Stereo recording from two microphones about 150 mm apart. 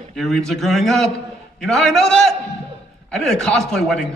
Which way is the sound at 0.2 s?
Centre (ahead or behind).